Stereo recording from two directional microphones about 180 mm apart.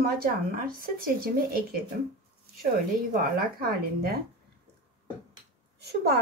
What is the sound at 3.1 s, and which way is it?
Speech, 55° right (ahead or behind).